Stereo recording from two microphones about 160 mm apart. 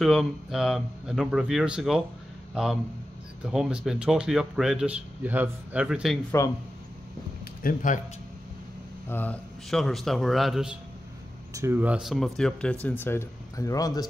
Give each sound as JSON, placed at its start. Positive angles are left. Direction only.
{"t": 0.0, "sound": "a man's voice", "side_deg": 0}
{"t": 6.4, "sound": "a man's voice", "side_deg": 20}
{"t": 7.6, "sound": "a man's voice", "side_deg": 55}
{"t": 9.1, "sound": "speech", "side_deg": 10}
{"t": 11.5, "sound": "speech", "side_deg": -15}